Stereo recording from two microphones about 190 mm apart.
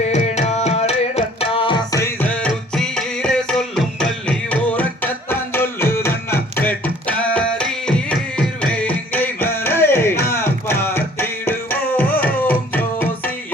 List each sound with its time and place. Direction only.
0.1 s music: 35° left (ahead or behind); by 13.3 s 10° left (ahead or behind)